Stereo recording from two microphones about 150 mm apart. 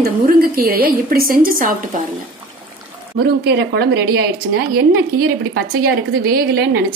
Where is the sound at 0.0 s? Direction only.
75° right (ahead or behind).